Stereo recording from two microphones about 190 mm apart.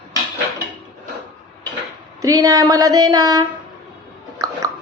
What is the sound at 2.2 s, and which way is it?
Speech, 20° right (ahead or behind).